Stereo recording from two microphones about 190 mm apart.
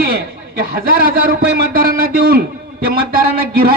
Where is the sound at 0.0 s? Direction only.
55° right (ahead or behind).